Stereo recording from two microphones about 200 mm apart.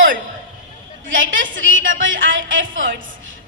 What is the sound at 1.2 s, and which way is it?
A woman's voice, 70° right (ahead or behind).